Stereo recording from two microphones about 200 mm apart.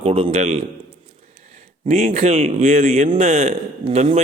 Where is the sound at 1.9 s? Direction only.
30° right (ahead or behind).